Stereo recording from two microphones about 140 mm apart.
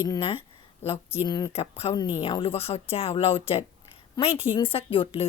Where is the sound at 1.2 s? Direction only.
30° left (ahead or behind).